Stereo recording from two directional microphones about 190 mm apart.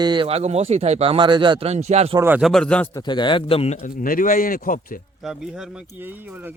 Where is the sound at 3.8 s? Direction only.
45° left (ahead or behind).